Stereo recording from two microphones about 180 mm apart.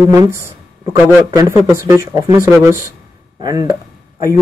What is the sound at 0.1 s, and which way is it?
Speech, 15° right (ahead or behind).